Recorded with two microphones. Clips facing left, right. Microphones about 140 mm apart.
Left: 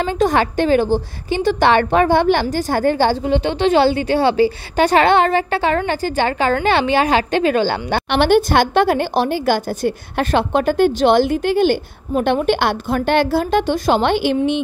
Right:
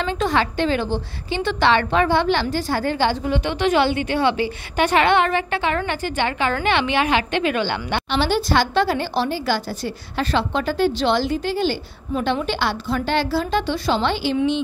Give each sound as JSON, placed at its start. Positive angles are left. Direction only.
{"t": 0.0, "sound": "a woman's voice", "side_deg": 45}
{"t": 3.3, "sound": "a woman's voice", "side_deg": 30}
{"t": 8.1, "sound": "a woman's voice", "side_deg": 60}